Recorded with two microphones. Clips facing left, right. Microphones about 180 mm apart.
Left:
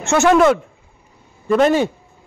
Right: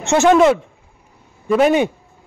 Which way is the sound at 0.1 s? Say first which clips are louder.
Right 1 dB; 20° right (ahead or behind).